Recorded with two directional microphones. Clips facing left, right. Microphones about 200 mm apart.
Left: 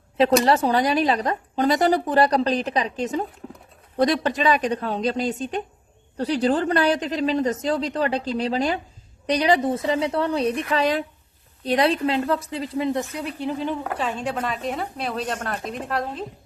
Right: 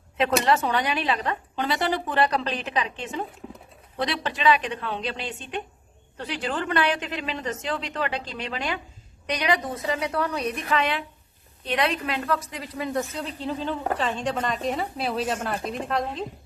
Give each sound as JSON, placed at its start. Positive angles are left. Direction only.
{"t": 0.2, "sound": "a woman's voice", "side_deg": 35}